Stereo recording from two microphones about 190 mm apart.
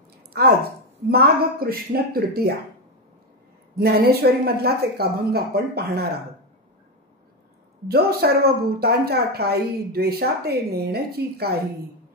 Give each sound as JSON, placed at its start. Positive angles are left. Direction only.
{"t": 0.3, "sound": "a woman's voice", "side_deg": -55}
{"t": 3.7, "sound": "a woman's voice", "side_deg": -55}
{"t": 7.9, "sound": "a woman's voice", "side_deg": -55}